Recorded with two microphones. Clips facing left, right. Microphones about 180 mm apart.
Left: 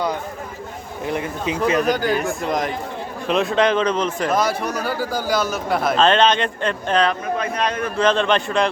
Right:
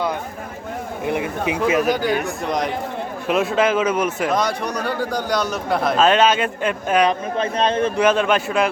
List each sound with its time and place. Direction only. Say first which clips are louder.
1.0 s speech: right 1 dB; 15° right (ahead or behind)
4.3 s speech: left 1 dB; 5° left (ahead or behind)
7.1 s a man's voice: right 1 dB; 30° right (ahead or behind)
7.9 s a man's voice: left 3 dB; 10° right (ahead or behind)